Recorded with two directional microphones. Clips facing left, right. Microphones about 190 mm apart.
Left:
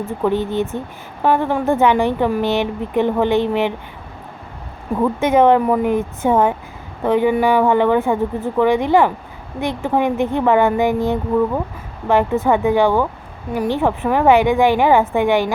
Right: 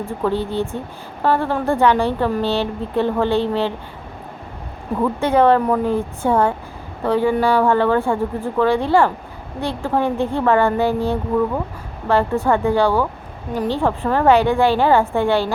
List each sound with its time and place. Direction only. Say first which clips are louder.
0.2 s a woman's voice: left 2 dB; 15° left (ahead or behind)
4.9 s a woman's voice: left 2 dB; 15° left (ahead or behind)